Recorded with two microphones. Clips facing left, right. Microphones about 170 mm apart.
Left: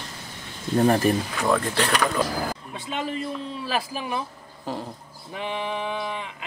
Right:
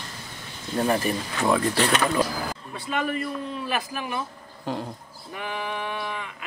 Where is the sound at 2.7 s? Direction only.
20° left (ahead or behind).